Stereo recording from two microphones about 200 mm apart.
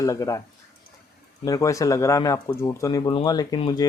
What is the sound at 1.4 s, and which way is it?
Speech, 15° left (ahead or behind).